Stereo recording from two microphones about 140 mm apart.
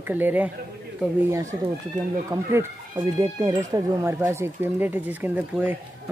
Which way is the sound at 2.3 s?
30° right (ahead or behind).